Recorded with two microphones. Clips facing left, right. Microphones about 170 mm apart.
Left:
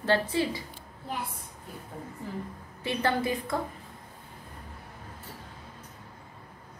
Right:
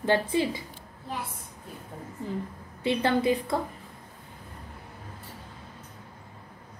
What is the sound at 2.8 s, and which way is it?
Speech, 20° right (ahead or behind).